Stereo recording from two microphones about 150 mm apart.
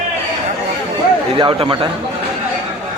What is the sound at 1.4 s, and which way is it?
Speech, 35° right (ahead or behind).